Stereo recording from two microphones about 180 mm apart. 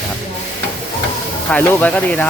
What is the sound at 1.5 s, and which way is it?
Speech, 10° left (ahead or behind).